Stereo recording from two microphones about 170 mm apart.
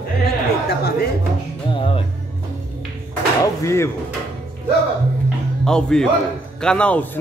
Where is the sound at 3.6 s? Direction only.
15° left (ahead or behind).